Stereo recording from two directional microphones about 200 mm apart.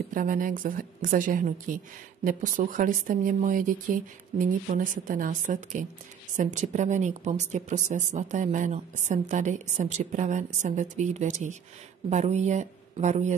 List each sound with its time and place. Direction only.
0.1 s speech: 40° right (ahead or behind)